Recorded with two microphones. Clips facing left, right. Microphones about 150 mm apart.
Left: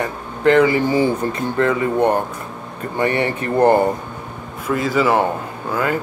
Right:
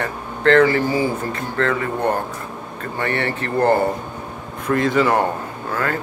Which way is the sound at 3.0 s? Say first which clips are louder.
Left 4 dB; 15° left (ahead or behind).